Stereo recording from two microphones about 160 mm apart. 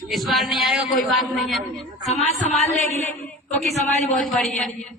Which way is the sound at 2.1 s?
45° left (ahead or behind).